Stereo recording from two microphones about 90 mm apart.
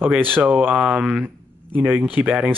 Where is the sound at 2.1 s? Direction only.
10° right (ahead or behind).